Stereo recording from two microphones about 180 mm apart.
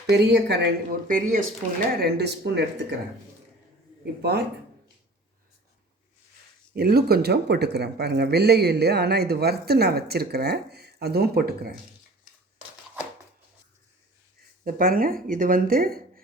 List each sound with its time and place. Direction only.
0.1 s speech: 70° right (ahead or behind); by 1.4 s 50° right (ahead or behind)
2.0 s speech: 65° right (ahead or behind)
4.0 s speech: 65° right (ahead or behind)
6.7 s speech: 60° right (ahead or behind)
14.6 s speech: 50° right (ahead or behind)